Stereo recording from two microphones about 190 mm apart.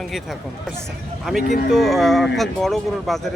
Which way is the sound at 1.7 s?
Centre (ahead or behind).